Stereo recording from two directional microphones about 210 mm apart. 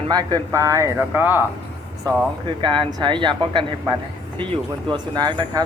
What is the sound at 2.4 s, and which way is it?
A man's voice, 20° right (ahead or behind).